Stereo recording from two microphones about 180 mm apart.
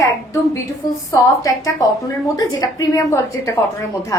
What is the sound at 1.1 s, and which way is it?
A woman's voice, 20° left (ahead or behind).